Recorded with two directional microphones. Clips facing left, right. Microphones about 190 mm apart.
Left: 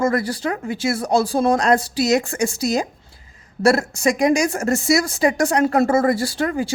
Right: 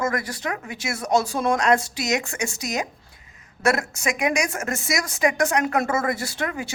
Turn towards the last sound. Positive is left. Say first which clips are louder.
# left 7 dB
turn(degrees=35)  # may be behind; listen again after turning